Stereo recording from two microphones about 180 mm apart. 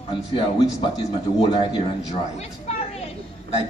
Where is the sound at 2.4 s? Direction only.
35° left (ahead or behind).